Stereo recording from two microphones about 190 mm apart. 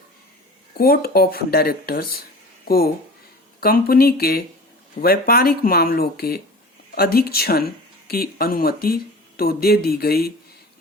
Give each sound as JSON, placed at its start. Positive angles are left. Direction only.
{"t": 0.8, "sound": "speech", "side_deg": 55}